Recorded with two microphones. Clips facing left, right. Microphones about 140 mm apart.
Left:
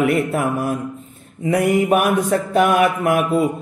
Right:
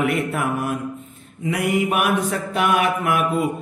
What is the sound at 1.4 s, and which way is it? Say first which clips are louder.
Mantra: left 5 dB; 40° left (ahead or behind).